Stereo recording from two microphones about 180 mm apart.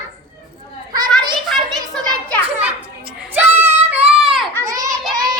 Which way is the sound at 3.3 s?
10° right (ahead or behind).